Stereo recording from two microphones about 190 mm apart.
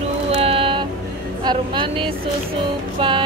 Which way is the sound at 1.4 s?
25° right (ahead or behind).